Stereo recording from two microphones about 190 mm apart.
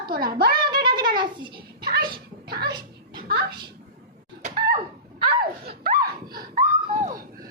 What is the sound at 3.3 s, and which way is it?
Speech, 55° right (ahead or behind).